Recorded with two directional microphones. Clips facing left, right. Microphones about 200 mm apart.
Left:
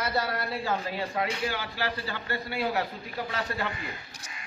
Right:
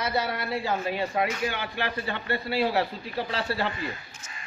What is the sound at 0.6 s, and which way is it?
Speech, 20° right (ahead or behind).